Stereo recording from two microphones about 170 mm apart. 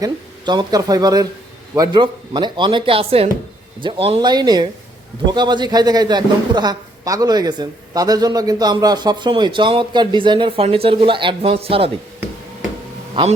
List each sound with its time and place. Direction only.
0.0 s a man's voice: 25° right (ahead or behind)